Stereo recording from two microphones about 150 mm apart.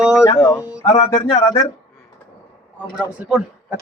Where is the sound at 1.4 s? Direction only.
30° left (ahead or behind).